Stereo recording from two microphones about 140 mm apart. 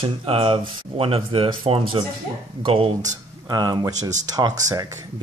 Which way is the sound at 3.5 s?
30° right (ahead or behind).